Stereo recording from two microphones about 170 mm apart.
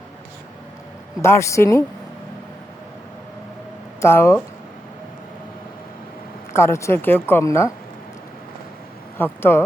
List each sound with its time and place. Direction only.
1.2 s a woman's voice: 15° left (ahead or behind)
4.0 s a woman's voice: 15° left (ahead or behind)
6.5 s a woman's voice: 15° left (ahead or behind)
9.1 s a woman's voice: 15° left (ahead or behind)